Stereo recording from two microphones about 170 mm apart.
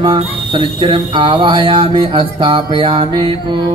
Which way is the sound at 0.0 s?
30° right (ahead or behind).